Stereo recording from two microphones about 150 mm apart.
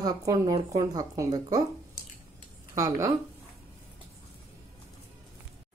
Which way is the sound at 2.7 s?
20° right (ahead or behind).